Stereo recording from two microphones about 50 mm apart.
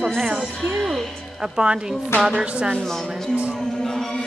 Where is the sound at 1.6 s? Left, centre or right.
Centre.